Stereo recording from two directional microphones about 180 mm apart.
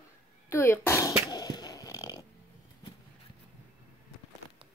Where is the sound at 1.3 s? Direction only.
20° left (ahead or behind).